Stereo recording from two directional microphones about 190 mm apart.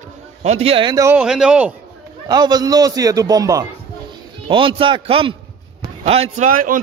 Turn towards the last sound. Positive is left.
turn(degrees=-45)  # may be behind; listen again after turning